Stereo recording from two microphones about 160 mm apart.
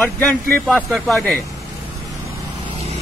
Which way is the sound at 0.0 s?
10° left (ahead or behind).